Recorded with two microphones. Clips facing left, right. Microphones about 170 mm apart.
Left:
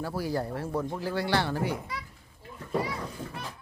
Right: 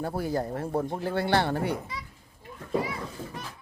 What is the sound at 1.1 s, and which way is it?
Speech, 55° right (ahead or behind).